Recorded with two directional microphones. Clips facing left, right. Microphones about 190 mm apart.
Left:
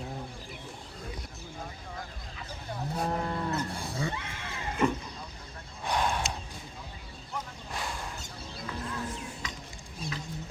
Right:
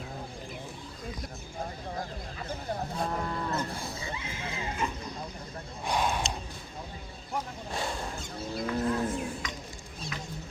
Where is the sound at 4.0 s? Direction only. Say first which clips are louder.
Left 3 dB; 70° left (ahead or behind).